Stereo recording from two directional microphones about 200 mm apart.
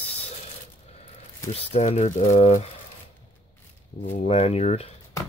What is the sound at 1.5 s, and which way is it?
Speech, 35° left (ahead or behind).